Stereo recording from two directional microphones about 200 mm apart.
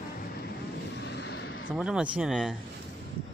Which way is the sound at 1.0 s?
60° left (ahead or behind).